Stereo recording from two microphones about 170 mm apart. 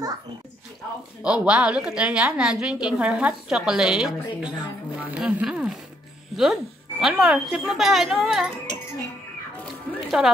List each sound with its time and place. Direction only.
1.2 s a woman's voice: 5° right (ahead or behind)
9.9 s music: centre (ahead or behind)